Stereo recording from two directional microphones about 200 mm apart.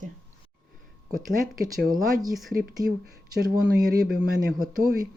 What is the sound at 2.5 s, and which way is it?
Speech, 50° right (ahead or behind).